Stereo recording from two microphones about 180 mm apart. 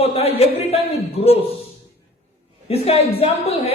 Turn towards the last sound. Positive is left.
turn(degrees=35)  # may be behind; listen again after turning